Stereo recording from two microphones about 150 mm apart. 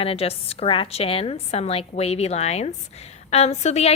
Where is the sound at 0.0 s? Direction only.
40° left (ahead or behind).